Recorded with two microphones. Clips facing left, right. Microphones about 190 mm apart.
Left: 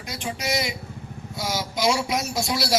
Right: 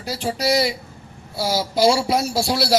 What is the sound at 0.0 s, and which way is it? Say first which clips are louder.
A woman's voice: right 7 dB; 35° right (ahead or behind).